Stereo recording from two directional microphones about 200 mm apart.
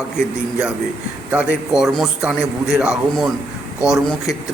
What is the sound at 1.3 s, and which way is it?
A man's voice, 5° right (ahead or behind).